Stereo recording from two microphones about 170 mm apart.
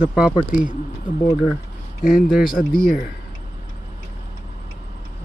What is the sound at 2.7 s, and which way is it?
Speech, 5° left (ahead or behind).